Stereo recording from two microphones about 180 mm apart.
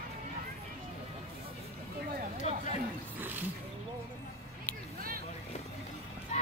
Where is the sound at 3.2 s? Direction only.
10° right (ahead or behind).